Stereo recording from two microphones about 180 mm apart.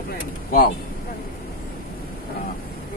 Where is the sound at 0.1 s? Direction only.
50° left (ahead or behind).